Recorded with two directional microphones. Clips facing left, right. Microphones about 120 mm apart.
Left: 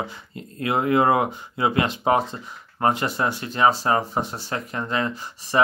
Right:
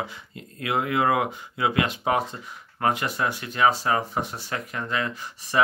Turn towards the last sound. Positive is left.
turn(degrees=30)  # may be behind; listen again after turning